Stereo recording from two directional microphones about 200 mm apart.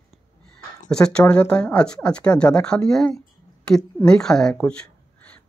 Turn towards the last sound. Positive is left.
turn(degrees=5)  # may be behind; listen again after turning